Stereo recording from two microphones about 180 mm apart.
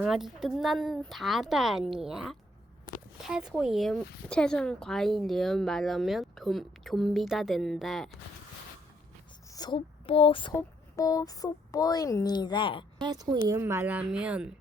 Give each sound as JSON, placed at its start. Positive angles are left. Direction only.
{"t": 0.0, "sound": "speech", "side_deg": 0}
{"t": 3.2, "sound": "speech", "side_deg": -5}
{"t": 9.6, "sound": "speech", "side_deg": 25}
{"t": 10.5, "sound": "speech", "side_deg": 15}
{"t": 13.0, "sound": "a woman's voice", "side_deg": -25}